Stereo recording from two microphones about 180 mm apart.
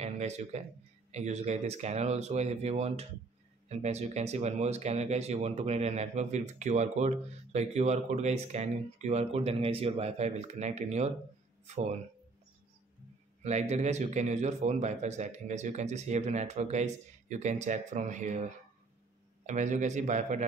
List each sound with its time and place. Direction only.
0.0 s speech: 40° right (ahead or behind)
13.4 s a man's voice: 40° right (ahead or behind)